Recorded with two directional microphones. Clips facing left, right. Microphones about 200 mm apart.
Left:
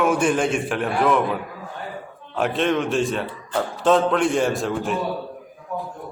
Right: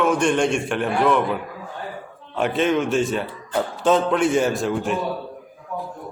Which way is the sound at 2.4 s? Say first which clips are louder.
Right 1 dB; centre (ahead or behind).